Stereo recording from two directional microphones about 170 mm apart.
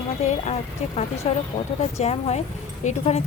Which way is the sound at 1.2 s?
35° left (ahead or behind).